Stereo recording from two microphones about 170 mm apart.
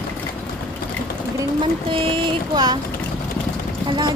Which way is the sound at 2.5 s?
25° right (ahead or behind).